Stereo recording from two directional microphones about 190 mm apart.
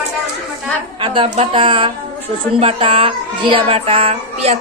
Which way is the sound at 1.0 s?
25° right (ahead or behind).